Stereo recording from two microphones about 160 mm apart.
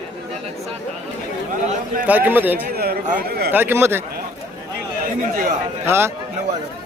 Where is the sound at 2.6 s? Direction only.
75° right (ahead or behind).